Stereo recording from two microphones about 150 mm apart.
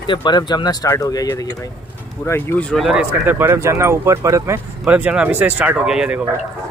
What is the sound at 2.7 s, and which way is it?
Speech, 5° right (ahead or behind).